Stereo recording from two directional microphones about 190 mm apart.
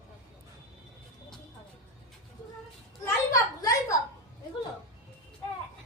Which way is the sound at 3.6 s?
20° left (ahead or behind).